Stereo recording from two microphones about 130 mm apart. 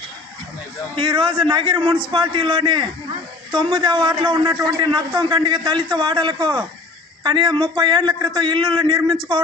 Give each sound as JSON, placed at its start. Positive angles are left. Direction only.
{"t": 0.9, "sound": "a man's voice", "side_deg": -40}